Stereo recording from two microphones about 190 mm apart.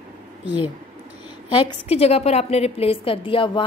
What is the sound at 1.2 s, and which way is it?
A woman's voice, 25° left (ahead or behind).